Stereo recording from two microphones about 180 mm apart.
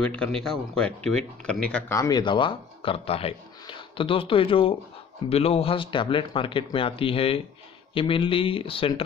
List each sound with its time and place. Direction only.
0.0 s speech: 5° left (ahead or behind); by 9.0 s 30° left (ahead or behind)